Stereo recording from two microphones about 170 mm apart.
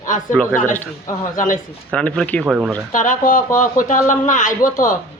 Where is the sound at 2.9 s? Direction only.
50° left (ahead or behind).